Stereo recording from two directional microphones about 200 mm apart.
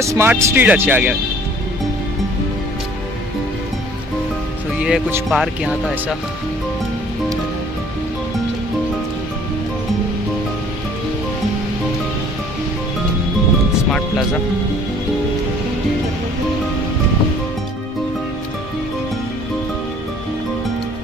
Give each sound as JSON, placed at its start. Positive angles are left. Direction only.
{"t": 0.0, "sound": "speech", "side_deg": -15}
{"t": 4.7, "sound": "speech", "side_deg": -5}